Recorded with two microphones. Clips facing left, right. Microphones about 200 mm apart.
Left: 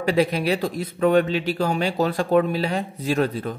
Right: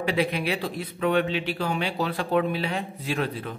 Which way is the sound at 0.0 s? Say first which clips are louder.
Left 5 dB; 40° left (ahead or behind).